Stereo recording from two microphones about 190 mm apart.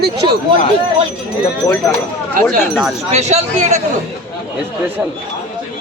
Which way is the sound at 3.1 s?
35° right (ahead or behind).